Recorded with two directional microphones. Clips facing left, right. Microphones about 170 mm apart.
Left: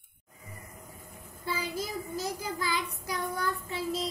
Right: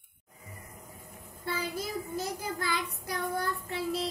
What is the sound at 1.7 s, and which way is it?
Child singing, 55° right (ahead or behind).